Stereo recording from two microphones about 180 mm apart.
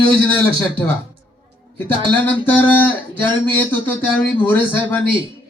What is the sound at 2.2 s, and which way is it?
Speech, 10° left (ahead or behind).